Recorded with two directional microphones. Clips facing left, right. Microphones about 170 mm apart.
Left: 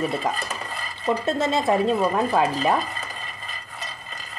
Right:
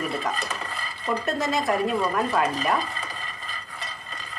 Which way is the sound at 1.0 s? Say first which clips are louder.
Left 3 dB; 25° left (ahead or behind).